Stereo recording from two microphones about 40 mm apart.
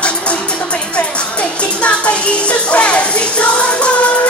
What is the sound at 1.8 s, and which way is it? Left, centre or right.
Music, left.